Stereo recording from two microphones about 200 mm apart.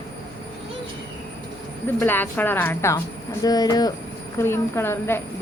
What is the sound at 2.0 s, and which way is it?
A woman's voice, 10° left (ahead or behind).